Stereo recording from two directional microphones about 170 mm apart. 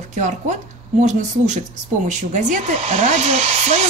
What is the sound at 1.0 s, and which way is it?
Speech, 45° right (ahead or behind).